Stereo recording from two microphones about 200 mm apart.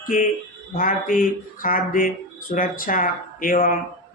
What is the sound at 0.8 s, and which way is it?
Speech, 45° left (ahead or behind).